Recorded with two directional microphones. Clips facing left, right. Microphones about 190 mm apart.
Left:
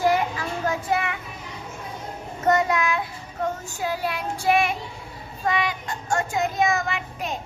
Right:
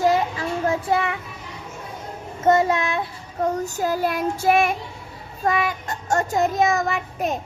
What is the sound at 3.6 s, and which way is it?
Child singing, 40° right (ahead or behind).